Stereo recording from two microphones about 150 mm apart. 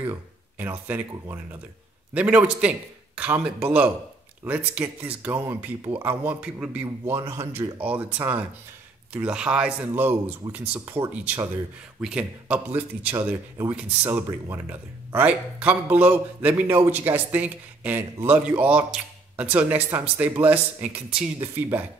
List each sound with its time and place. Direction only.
0.0 s speech: 15° right (ahead or behind)